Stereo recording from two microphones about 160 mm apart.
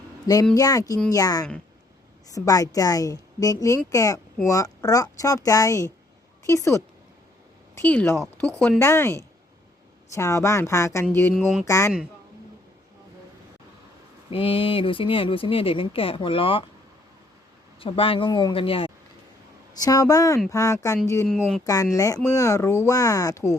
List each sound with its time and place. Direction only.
0.5 s a woman's voice: 25° left (ahead or behind); by 8.5 s 5° left (ahead or behind)
8.8 s a woman's voice: 15° left (ahead or behind)
11.3 s speech: centre (ahead or behind)
11.6 s a woman's voice: 20° left (ahead or behind)
14.3 s speech: 35° left (ahead or behind)
17.7 s speech: 35° left (ahead or behind)
19.8 s a woman's voice: 20° left (ahead or behind)
21.2 s speech: centre (ahead or behind)
21.9 s a woman's voice: 20° left (ahead or behind)